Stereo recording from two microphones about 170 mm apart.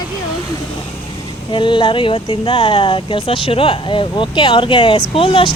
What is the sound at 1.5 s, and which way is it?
Speech, 30° left (ahead or behind).